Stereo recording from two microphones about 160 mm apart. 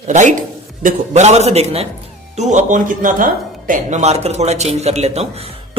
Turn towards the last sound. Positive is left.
turn(degrees=-40)  # may be behind; listen again after turning